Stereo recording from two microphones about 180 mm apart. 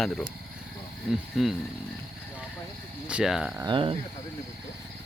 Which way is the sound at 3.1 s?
5° right (ahead or behind).